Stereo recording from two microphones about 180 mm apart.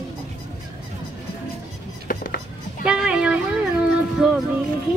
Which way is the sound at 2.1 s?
50° left (ahead or behind).